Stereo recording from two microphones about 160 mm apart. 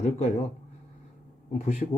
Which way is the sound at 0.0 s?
45° left (ahead or behind).